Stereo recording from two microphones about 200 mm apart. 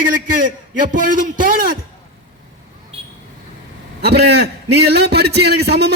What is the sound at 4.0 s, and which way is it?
A man's voice, 55° right (ahead or behind).